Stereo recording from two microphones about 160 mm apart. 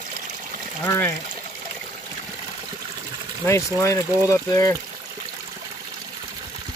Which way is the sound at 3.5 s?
20° left (ahead or behind).